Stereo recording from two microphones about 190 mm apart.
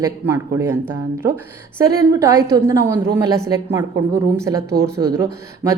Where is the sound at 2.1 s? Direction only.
15° right (ahead or behind).